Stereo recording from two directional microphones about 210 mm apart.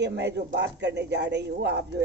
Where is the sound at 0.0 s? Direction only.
55° right (ahead or behind).